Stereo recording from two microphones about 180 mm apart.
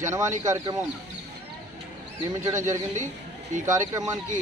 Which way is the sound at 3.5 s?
45° right (ahead or behind).